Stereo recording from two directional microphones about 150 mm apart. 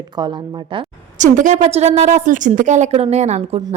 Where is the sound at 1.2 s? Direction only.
55° right (ahead or behind).